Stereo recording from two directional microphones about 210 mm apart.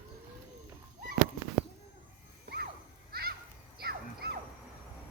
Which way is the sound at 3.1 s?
45° right (ahead or behind).